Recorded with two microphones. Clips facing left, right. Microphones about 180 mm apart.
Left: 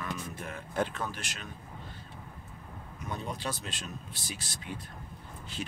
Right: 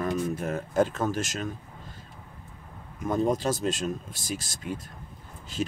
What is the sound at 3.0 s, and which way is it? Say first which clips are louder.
Speech: right 12 dB; 45° right (ahead or behind).